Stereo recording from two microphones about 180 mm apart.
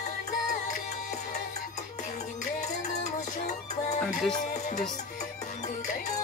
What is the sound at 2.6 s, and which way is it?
Music, 40° left (ahead or behind).